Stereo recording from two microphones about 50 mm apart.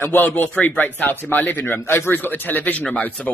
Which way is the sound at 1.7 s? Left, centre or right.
Left.